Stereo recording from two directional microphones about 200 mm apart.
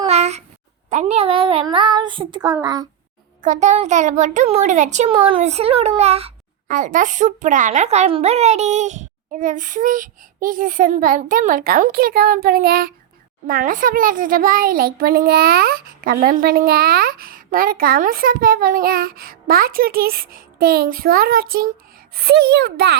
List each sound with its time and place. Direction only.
0.1 s a sound: 35° right (ahead or behind)
0.9 s child singing: 35° right (ahead or behind)
3.4 s a child's voice: 35° right (ahead or behind)
6.7 s a child's voice: 40° right (ahead or behind)